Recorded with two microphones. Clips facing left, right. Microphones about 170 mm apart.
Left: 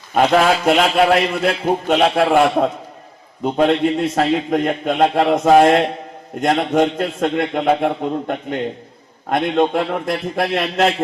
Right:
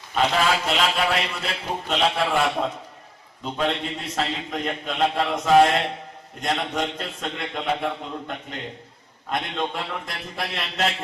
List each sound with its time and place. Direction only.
0.1 s a man's voice: 50° left (ahead or behind)